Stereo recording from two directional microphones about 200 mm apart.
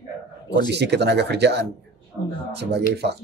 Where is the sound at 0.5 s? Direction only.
55° right (ahead or behind).